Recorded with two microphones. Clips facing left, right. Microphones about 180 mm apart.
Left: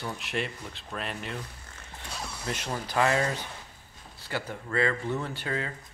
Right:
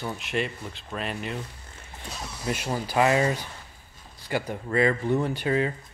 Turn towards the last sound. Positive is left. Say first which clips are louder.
# right 8 dB
turn(degrees=-20)  # may be behind; listen again after turning